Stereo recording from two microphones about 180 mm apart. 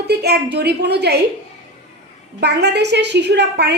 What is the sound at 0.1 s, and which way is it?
A woman's voice, 65° right (ahead or behind).